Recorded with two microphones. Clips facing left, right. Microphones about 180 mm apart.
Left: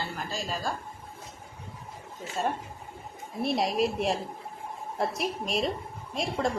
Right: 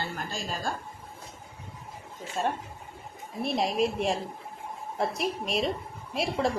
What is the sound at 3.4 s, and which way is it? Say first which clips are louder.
A woman's voice: even; centre (ahead or behind).